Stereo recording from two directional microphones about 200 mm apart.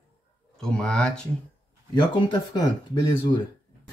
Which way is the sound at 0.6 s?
5° left (ahead or behind).